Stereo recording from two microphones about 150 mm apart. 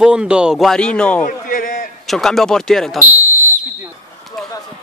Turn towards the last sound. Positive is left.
turn(degrees=5)  # may be behind; listen again after turning